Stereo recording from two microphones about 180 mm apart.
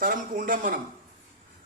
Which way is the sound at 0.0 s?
50° right (ahead or behind).